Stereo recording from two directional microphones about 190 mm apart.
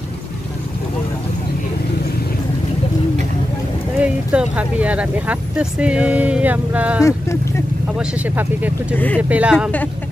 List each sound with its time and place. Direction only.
4.0 s speech: 5° right (ahead or behind)
7.0 s speech: 15° left (ahead or behind)
8.0 s speech: 5° right (ahead or behind)
8.9 s speech: 10° left (ahead or behind)
9.3 s speech: 5° right (ahead or behind)